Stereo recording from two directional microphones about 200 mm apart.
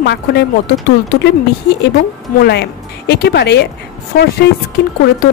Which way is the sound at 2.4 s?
55° left (ahead or behind).